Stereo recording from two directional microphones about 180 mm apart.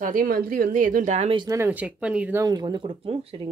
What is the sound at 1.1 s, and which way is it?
Speech, 30° right (ahead or behind).